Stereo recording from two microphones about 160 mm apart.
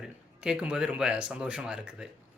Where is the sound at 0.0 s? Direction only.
5° right (ahead or behind).